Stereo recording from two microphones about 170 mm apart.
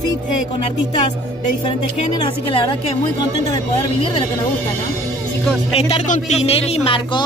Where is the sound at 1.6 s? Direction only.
30° left (ahead or behind).